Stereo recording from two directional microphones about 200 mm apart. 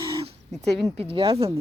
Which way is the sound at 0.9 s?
25° right (ahead or behind).